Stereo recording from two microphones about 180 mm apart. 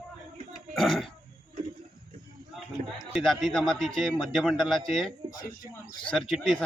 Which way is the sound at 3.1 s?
Centre (ahead or behind).